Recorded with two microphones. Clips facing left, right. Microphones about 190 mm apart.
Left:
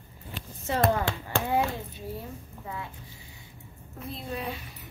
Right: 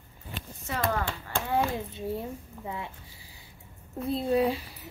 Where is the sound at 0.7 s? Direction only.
25° left (ahead or behind).